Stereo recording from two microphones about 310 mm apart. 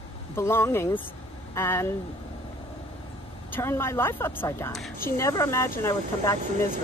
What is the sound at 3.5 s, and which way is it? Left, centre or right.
Speech, centre.